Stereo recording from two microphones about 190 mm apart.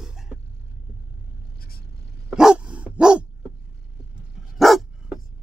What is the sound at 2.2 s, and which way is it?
Dog, 5° right (ahead or behind).